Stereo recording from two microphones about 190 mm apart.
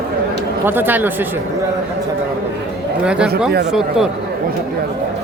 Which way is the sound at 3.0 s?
5° right (ahead or behind).